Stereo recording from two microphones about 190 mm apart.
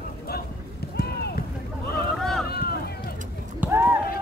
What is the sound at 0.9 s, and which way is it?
Clip-clop, 55° left (ahead or behind).